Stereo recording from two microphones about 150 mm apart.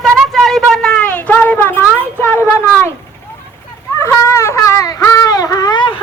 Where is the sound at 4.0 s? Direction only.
20° left (ahead or behind).